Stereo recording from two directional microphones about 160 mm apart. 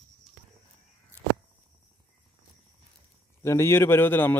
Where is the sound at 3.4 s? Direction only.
15° left (ahead or behind).